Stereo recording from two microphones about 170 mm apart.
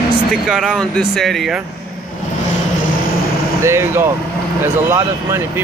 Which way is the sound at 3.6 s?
15° right (ahead or behind).